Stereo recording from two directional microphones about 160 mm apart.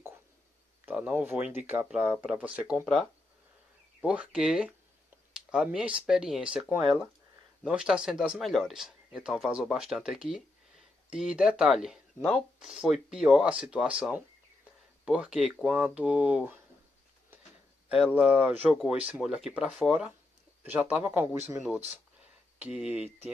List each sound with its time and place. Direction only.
0.8 s speech: 10° right (ahead or behind)
2.8 s speech: 5° left (ahead or behind)
4.0 s speech: 5° right (ahead or behind)
18.1 s speech: 5° right (ahead or behind)
22.7 s speech: 40° left (ahead or behind)